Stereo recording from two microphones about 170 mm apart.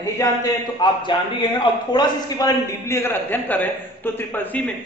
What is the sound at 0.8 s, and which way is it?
A man's voice, 25° left (ahead or behind).